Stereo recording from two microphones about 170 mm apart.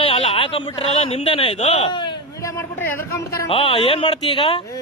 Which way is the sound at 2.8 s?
15° left (ahead or behind).